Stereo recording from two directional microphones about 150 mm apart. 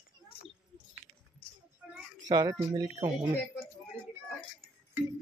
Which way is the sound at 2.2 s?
25° right (ahead or behind).